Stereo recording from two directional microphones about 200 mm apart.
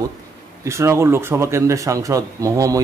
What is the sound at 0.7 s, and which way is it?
A man's voice, 15° right (ahead or behind).